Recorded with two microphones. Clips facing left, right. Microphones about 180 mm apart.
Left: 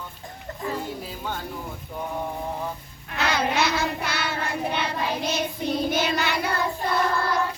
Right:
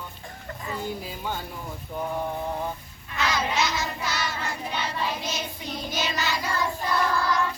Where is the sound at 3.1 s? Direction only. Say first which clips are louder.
Left 2 dB; 60° left (ahead or behind).